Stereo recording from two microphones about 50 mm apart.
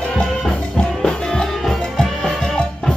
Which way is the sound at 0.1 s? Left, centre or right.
Centre.